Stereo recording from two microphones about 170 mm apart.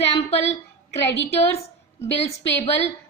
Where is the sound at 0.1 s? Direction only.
35° left (ahead or behind).